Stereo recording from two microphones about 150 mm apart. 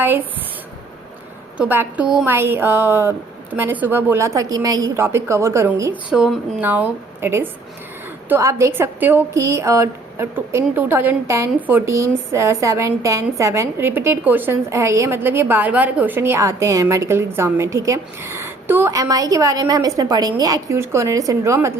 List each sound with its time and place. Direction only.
1.5 s a woman's voice: 10° right (ahead or behind)
6.1 s a woman's voice: 5° right (ahead or behind); by 21.8 s 20° right (ahead or behind)